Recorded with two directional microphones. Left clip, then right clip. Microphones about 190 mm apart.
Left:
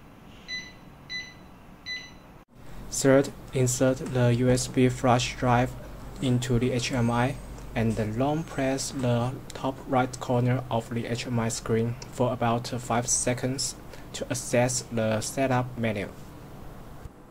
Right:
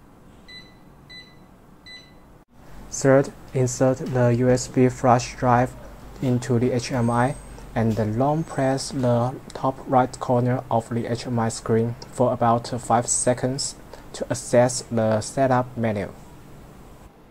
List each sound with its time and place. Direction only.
2.9 s speech: 10° left (ahead or behind)
6.5 s speech: 5° right (ahead or behind)